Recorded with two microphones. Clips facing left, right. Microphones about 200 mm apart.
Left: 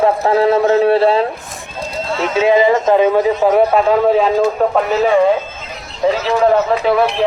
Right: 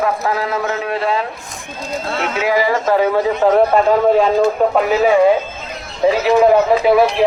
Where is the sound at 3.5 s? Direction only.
5° left (ahead or behind).